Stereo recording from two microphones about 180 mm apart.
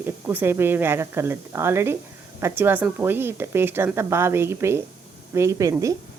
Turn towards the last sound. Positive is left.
turn(degrees=-20)  # may be behind; listen again after turning